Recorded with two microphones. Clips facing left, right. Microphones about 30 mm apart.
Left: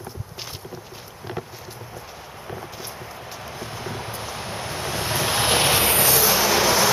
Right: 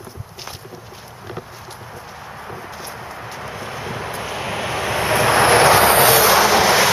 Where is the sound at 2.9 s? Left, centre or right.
Right.